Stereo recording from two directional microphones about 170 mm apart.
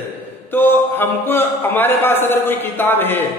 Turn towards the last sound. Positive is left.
turn(degrees=10)  # may be behind; listen again after turning